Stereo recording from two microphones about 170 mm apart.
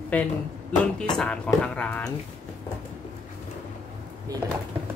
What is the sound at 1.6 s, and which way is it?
Speech, 5° left (ahead or behind).